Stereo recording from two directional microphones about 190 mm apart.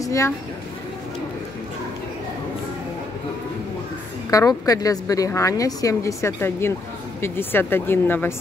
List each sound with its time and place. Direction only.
0.0 s speech: 15° left (ahead or behind)
4.3 s a woman's voice: 20° left (ahead or behind)